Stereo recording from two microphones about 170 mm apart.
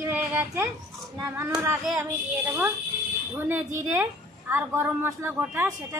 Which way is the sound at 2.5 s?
15° right (ahead or behind).